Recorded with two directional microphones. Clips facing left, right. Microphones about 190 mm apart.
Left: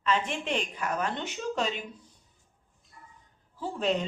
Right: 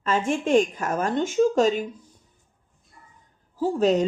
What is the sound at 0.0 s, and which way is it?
A woman's voice, 45° right (ahead or behind).